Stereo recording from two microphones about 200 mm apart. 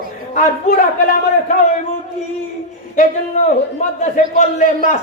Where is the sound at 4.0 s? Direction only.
40° left (ahead or behind).